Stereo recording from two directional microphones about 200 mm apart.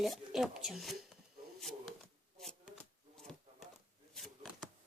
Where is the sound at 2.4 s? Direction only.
Centre (ahead or behind).